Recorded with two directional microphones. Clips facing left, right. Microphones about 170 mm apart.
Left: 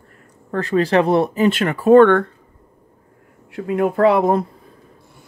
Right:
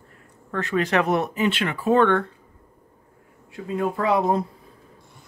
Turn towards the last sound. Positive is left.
turn(degrees=60)  # may be behind; listen again after turning